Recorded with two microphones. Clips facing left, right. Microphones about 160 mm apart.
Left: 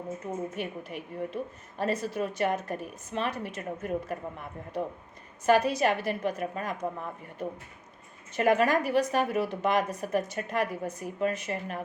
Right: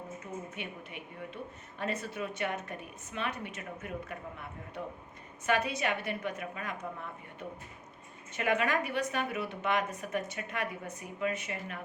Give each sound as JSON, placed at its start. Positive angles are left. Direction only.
{"t": 0.5, "sound": "a woman's voice", "side_deg": 40}
{"t": 5.5, "sound": "a woman's voice", "side_deg": 40}